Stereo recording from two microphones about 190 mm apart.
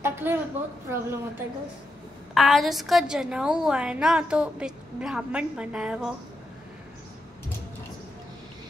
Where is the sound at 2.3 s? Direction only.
Centre (ahead or behind).